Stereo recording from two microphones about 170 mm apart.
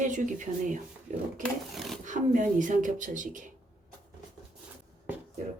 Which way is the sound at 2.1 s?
50° right (ahead or behind).